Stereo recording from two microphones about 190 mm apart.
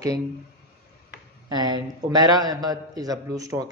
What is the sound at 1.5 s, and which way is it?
A man's voice, 20° right (ahead or behind).